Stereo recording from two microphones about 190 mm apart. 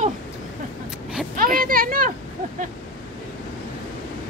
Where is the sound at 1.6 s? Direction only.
50° right (ahead or behind).